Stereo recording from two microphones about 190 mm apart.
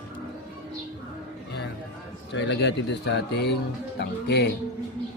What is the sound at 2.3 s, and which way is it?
Speech, 70° left (ahead or behind).